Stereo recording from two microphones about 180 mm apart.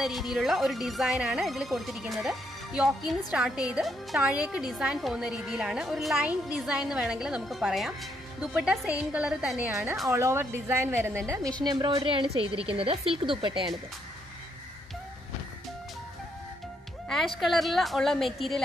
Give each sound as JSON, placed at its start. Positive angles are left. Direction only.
{"t": 0.0, "sound": "a woman's voice", "side_deg": 0}
{"t": 17.1, "sound": "speech", "side_deg": 0}